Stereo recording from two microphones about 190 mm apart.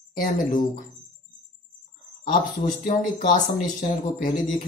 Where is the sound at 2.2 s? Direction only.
45° left (ahead or behind).